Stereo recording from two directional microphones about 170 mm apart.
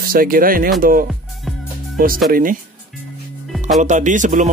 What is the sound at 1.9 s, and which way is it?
Speech, 55° right (ahead or behind).